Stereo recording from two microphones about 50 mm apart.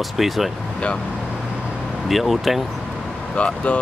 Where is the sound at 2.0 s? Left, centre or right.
Centre.